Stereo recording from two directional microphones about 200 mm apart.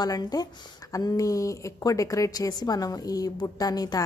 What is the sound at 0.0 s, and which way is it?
Speech, 20° left (ahead or behind).